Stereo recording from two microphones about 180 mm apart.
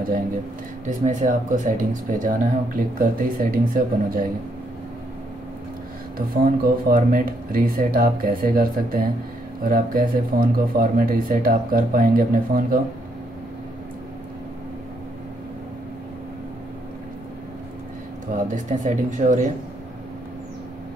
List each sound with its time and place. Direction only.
0.8 s speech: 45° right (ahead or behind)
6.1 s speech: 50° right (ahead or behind)
18.5 s speech: 45° right (ahead or behind)